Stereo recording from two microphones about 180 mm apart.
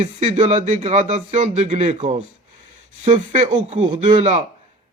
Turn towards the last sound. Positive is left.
turn(degrees=-40)  # may be behind; listen again after turning